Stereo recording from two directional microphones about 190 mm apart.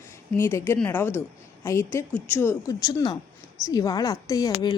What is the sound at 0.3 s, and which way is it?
Speech, 10° left (ahead or behind).